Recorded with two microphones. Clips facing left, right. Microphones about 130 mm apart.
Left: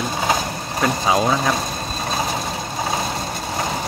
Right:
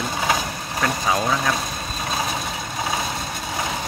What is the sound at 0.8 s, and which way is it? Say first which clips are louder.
Speech: left 4 dB; 20° left (ahead or behind).